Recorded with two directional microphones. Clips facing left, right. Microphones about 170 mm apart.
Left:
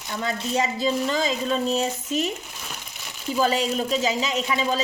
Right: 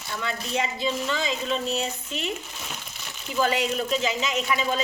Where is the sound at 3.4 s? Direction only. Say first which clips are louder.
Left 2 dB; 35° left (ahead or behind).